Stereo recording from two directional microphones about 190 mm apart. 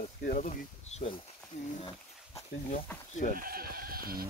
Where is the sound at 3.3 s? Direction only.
50° right (ahead or behind).